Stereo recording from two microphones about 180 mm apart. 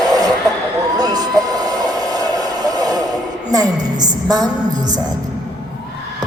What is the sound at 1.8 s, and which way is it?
Hair dryer, 20° right (ahead or behind).